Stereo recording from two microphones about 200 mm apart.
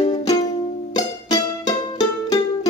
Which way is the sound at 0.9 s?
20° left (ahead or behind).